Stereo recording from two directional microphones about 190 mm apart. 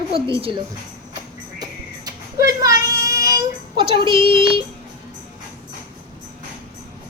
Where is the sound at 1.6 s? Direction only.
20° right (ahead or behind).